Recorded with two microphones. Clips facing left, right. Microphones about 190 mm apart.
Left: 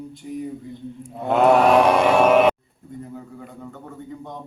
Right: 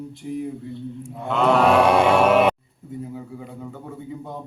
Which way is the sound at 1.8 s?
60° right (ahead or behind).